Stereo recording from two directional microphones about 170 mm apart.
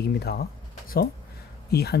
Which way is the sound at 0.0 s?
70° left (ahead or behind).